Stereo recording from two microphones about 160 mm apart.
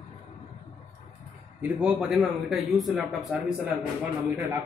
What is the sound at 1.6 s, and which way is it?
A man's voice, 5° right (ahead or behind).